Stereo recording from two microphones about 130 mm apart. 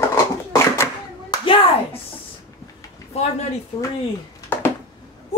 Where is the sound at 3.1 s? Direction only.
55° left (ahead or behind).